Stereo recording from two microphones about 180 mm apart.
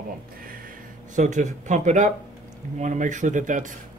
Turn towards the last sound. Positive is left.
turn(degrees=-45)  # may be behind; listen again after turning